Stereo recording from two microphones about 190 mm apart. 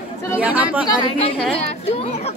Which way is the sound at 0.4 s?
5° right (ahead or behind).